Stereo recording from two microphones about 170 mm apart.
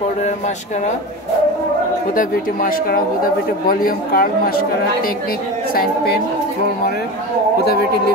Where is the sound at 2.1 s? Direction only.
55° left (ahead or behind).